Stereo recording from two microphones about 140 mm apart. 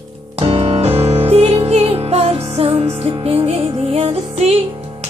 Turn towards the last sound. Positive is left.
turn(degrees=-45)  # may be behind; listen again after turning